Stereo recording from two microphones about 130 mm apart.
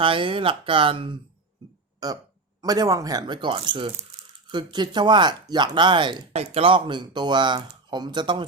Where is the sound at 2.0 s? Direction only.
30° right (ahead or behind).